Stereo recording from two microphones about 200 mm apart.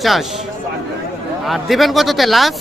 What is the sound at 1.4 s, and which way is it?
A man's voice, centre (ahead or behind).